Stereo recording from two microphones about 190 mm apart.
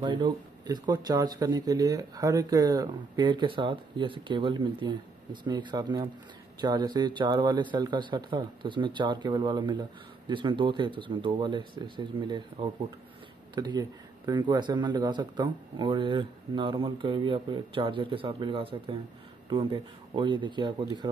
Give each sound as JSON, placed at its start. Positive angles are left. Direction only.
{"t": 0.0, "sound": "speech", "side_deg": -25}